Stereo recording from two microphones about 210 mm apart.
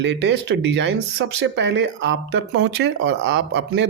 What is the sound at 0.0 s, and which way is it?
Speech, 55° right (ahead or behind).